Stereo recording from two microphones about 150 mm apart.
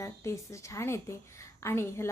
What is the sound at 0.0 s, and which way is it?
A woman's voice, 20° left (ahead or behind).